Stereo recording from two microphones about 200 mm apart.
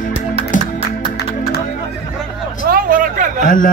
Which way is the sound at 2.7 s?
45° right (ahead or behind).